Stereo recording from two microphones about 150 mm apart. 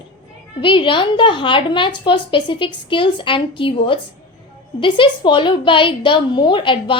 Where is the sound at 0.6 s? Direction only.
35° left (ahead or behind).